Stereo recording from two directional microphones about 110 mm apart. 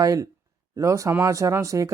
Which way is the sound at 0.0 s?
30° right (ahead or behind).